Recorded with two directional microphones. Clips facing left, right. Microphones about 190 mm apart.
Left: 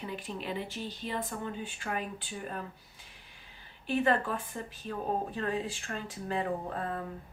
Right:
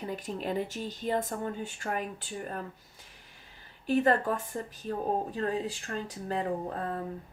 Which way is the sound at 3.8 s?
40° right (ahead or behind).